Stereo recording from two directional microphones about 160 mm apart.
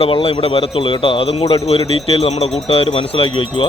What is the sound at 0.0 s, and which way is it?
Speech, 35° left (ahead or behind).